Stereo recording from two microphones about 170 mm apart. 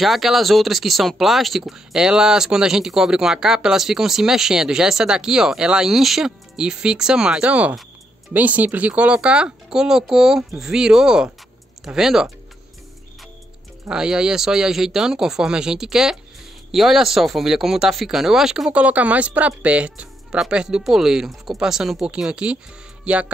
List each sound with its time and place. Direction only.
0.0 s speech: centre (ahead or behind)
13.8 s speech: 5° right (ahead or behind)
23.0 s music: 5° right (ahead or behind)